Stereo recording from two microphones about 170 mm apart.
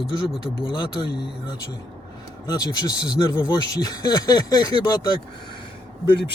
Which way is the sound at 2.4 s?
25° left (ahead or behind).